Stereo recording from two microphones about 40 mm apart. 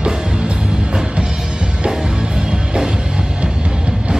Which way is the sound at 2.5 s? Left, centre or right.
Right.